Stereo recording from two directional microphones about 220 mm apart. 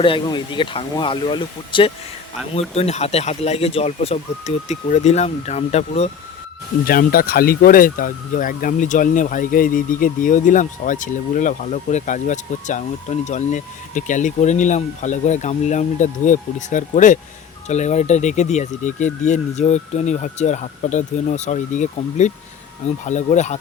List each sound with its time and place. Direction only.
0.0 s speech: 20° left (ahead or behind)
6.8 s speech: 40° left (ahead or behind)